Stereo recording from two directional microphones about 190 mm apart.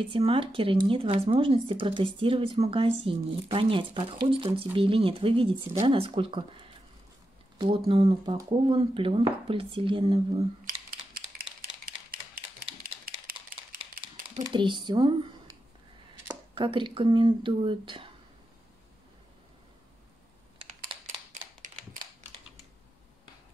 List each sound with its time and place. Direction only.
0.0 s speech: 30° right (ahead or behind)
10.6 s typing: 50° right (ahead or behind)
13.0 s a sound: 50° right (ahead or behind)
14.4 s speech: 25° right (ahead or behind)
16.5 s speech: 25° right (ahead or behind)
21.3 s a sound: 45° right (ahead or behind)